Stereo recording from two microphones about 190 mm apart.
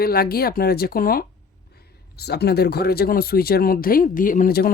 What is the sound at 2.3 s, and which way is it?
Speech, 60° left (ahead or behind).